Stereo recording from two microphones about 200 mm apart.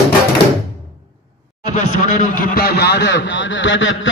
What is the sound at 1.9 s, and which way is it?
A man's voice, 40° left (ahead or behind).